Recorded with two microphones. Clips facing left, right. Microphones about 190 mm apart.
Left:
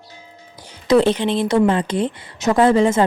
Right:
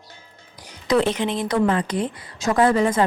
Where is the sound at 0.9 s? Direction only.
30° left (ahead or behind).